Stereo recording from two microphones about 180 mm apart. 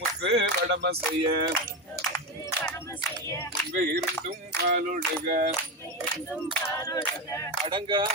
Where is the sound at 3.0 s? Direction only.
15° left (ahead or behind).